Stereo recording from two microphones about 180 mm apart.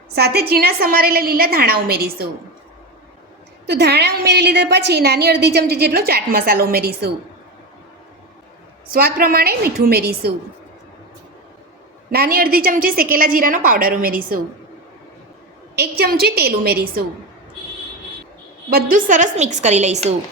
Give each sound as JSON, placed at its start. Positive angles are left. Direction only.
{"t": 0.1, "sound": "a woman's voice", "side_deg": -65}
{"t": 3.7, "sound": "a woman's voice", "side_deg": -65}
{"t": 8.9, "sound": "a woman's voice", "side_deg": -55}
{"t": 12.1, "sound": "a woman's voice", "side_deg": -55}
{"t": 15.7, "sound": "a woman's voice", "side_deg": -60}
{"t": 18.7, "sound": "a woman's voice", "side_deg": -55}